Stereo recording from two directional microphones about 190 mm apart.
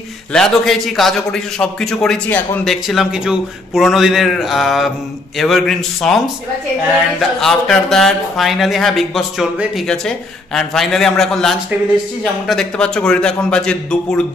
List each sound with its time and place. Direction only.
0.3 s speech: centre (ahead or behind)
2.7 s speech: centre (ahead or behind)
7.2 s speech: centre (ahead or behind)